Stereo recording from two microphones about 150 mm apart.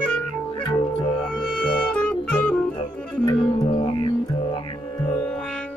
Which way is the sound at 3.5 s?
40° left (ahead or behind).